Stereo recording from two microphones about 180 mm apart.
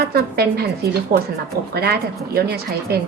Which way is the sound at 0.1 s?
60° right (ahead or behind).